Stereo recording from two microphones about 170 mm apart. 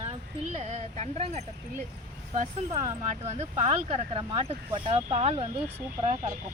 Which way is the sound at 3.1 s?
40° right (ahead or behind).